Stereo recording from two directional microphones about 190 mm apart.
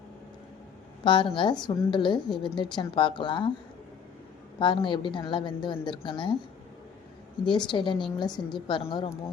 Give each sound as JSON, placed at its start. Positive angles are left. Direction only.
{"t": 1.0, "sound": "a woman's voice", "side_deg": 25}
{"t": 4.6, "sound": "a woman's voice", "side_deg": 25}
{"t": 7.4, "sound": "a woman's voice", "side_deg": 25}